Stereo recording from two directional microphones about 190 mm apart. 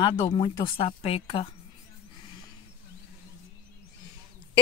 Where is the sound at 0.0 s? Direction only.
25° left (ahead or behind).